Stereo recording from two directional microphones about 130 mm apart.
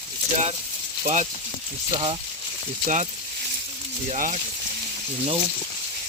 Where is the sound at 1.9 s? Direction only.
40° right (ahead or behind).